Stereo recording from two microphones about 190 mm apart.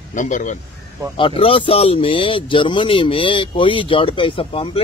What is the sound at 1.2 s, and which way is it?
Speech, 30° left (ahead or behind).